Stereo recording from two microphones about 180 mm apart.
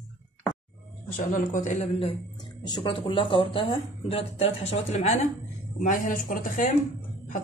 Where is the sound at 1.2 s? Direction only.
45° left (ahead or behind).